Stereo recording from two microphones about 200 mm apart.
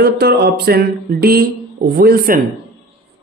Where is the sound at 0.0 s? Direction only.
50° right (ahead or behind).